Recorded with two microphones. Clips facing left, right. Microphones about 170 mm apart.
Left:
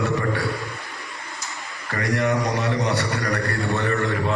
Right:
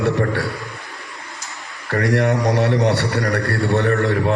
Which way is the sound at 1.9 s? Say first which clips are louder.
Right 5 dB; 50° right (ahead or behind).